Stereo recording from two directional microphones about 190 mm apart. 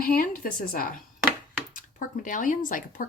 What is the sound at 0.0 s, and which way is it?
Speech, 45° left (ahead or behind).